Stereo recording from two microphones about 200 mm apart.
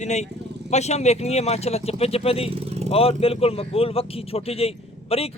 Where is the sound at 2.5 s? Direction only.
30° right (ahead or behind).